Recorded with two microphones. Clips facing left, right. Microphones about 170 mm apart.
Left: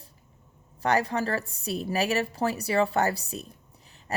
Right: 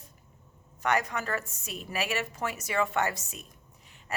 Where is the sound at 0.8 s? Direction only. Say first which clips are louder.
Left 4 dB; 35° left (ahead or behind).